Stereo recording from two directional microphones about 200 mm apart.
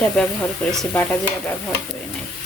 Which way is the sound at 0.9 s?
10° left (ahead or behind).